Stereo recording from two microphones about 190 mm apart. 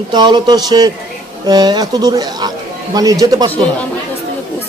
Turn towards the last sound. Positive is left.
turn(degrees=-20)  # may be behind; listen again after turning